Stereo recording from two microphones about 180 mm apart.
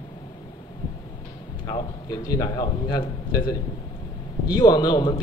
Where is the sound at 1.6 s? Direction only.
25° left (ahead or behind).